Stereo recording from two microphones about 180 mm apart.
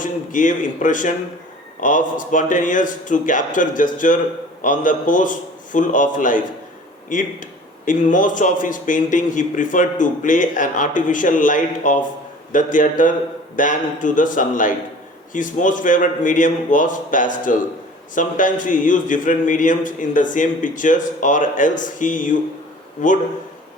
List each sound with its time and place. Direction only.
0.0 s a man's voice: 45° left (ahead or behind)